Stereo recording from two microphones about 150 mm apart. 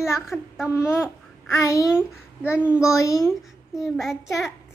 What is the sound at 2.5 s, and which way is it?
Speech, 10° right (ahead or behind).